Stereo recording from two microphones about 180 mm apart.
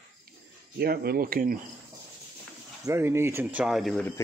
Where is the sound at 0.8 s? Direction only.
60° right (ahead or behind).